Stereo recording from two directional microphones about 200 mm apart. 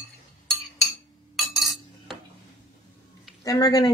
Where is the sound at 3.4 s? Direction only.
20° left (ahead or behind).